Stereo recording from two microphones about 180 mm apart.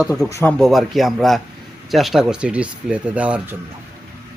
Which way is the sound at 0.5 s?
Centre (ahead or behind).